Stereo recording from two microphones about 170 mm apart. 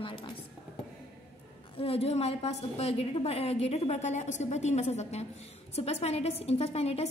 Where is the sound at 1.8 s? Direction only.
35° left (ahead or behind).